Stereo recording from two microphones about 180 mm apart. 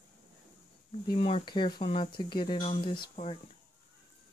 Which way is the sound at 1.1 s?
30° left (ahead or behind).